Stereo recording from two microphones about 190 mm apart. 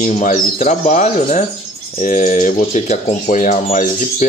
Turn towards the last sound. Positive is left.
turn(degrees=40)  # may be behind; listen again after turning